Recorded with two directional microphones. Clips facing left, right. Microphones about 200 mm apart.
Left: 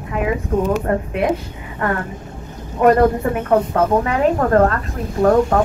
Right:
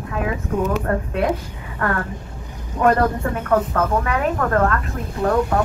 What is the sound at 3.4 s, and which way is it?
Speech, 30° left (ahead or behind).